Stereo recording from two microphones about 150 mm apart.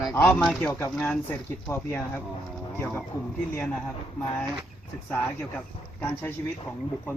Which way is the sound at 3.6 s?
10° left (ahead or behind).